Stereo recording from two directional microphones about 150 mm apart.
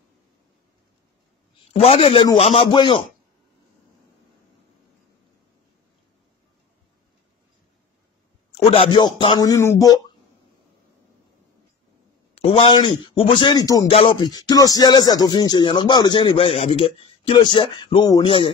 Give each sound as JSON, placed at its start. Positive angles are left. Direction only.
{"t": 1.7, "sound": "speech", "side_deg": 40}
{"t": 8.5, "sound": "a man's voice", "side_deg": 40}
{"t": 12.4, "sound": "speech", "side_deg": 40}
{"t": 13.8, "sound": "speech", "side_deg": 40}
{"t": 14.2, "sound": "speech", "side_deg": 25}